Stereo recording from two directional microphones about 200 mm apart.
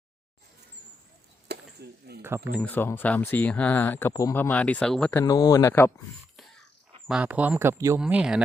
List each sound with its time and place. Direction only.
1.5 s a sound: 55° right (ahead or behind)
2.2 s speech: 10° right (ahead or behind)
2.6 s speech: 10° left (ahead or behind)
5.2 s speech: 20° left (ahead or behind)
7.1 s speech: 5° right (ahead or behind)